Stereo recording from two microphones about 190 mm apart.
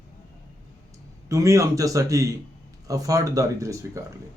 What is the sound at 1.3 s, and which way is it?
Speech, 15° right (ahead or behind).